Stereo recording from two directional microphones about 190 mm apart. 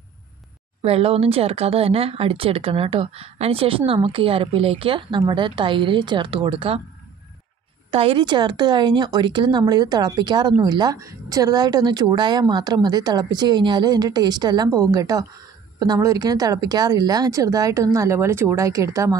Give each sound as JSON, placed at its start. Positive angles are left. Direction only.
{"t": 0.8, "sound": "speech", "side_deg": -30}
{"t": 7.9, "sound": "speech", "side_deg": -30}